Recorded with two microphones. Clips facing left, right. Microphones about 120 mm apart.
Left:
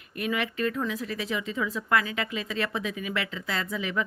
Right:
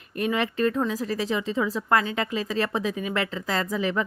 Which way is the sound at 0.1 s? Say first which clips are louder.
Right 4 dB; 35° right (ahead or behind).